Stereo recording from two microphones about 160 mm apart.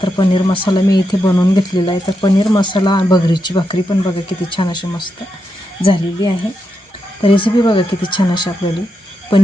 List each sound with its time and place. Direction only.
0.0 s speech: 30° left (ahead or behind)
9.3 s frog: 30° left (ahead or behind)